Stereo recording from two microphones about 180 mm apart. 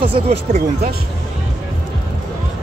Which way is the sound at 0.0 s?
35° right (ahead or behind).